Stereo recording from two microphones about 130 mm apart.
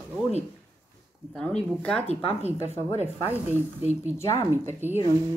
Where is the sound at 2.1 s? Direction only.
55° left (ahead or behind).